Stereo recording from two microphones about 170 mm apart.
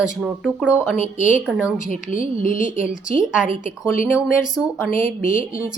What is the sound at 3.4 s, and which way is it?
Speech, 50° left (ahead or behind).